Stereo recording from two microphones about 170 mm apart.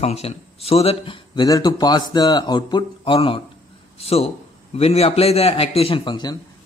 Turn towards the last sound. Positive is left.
turn(degrees=25)  # may be behind; listen again after turning